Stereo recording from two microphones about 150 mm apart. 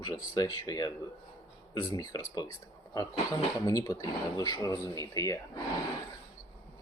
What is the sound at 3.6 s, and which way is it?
Speech, 25° left (ahead or behind).